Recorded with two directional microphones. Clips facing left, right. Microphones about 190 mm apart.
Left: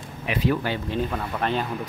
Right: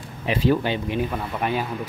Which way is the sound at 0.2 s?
30° right (ahead or behind).